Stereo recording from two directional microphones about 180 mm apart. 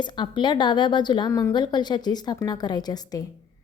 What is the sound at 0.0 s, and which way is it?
A woman's voice, 25° left (ahead or behind).